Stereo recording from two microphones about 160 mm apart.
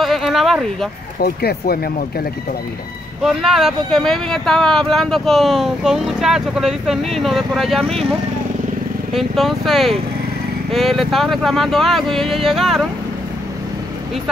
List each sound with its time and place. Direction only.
0.0 s a sound: centre (ahead or behind)
1.2 s speech: 75° left (ahead or behind)
3.3 s speech: centre (ahead or behind)
9.1 s speech: centre (ahead or behind)